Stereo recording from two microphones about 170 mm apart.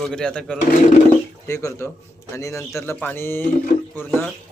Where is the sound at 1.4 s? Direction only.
15° left (ahead or behind).